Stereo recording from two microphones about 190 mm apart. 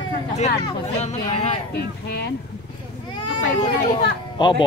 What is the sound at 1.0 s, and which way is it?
Speech, 35° left (ahead or behind).